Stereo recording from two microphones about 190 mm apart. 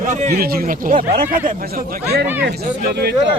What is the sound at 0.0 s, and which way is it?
Speech, 40° right (ahead or behind).